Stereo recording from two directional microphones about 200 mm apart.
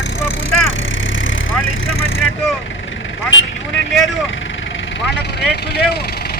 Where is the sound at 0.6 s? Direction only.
75° left (ahead or behind); by 6.3 s 50° left (ahead or behind).